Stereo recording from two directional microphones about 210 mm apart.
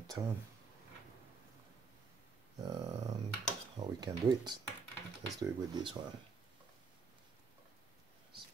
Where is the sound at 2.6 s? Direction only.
15° right (ahead or behind).